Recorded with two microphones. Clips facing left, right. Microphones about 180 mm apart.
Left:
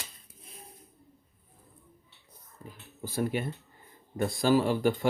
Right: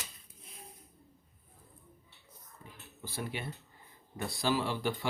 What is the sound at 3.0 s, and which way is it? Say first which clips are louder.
Speech: left 9 dB; 45° left (ahead or behind).